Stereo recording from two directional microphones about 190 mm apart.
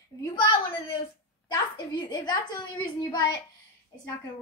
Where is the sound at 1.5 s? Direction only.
25° left (ahead or behind).